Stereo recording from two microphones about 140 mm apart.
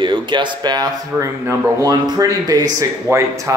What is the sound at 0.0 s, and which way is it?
Speech, 35° right (ahead or behind).